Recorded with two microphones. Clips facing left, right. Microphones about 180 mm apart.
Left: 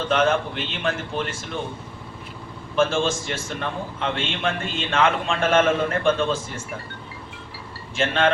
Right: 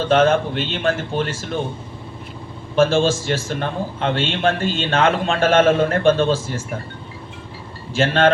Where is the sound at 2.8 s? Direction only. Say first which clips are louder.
Right 6 dB; 35° right (ahead or behind).